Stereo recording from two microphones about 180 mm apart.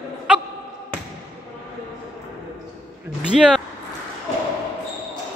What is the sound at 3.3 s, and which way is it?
Speech, centre (ahead or behind).